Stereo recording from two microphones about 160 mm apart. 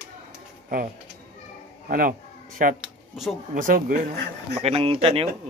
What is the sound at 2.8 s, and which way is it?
Speech, centre (ahead or behind).